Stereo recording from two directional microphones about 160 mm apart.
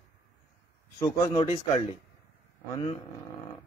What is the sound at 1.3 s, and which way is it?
Speech, 40° left (ahead or behind).